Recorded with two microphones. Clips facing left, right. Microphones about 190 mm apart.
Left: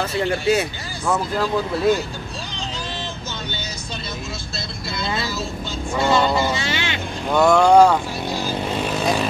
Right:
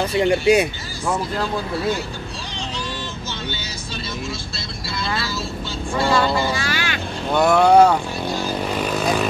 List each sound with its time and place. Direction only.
0.0 s speech: 15° right (ahead or behind)
5.0 s vehicle: 20° left (ahead or behind)
6.0 s speech: 20° left (ahead or behind)
7.3 s speech: 5° right (ahead or behind)